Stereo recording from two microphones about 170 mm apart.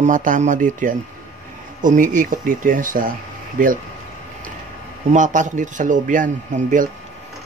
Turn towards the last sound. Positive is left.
turn(degrees=-50)  # may be behind; listen again after turning